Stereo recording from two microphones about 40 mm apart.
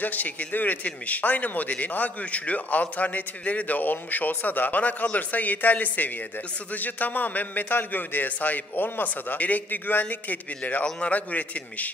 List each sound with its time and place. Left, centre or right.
0.0 s a man's voice: left
9.3 s a man's voice: left